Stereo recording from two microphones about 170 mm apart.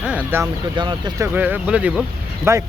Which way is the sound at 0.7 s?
25° right (ahead or behind).